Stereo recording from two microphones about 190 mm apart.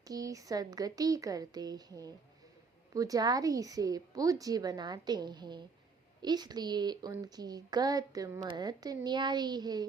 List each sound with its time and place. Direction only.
0.1 s a woman's voice: 20° right (ahead or behind)